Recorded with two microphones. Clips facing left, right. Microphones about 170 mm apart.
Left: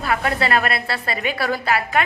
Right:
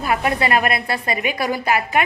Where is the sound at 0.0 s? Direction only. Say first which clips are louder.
Right 1 dB; 20° right (ahead or behind).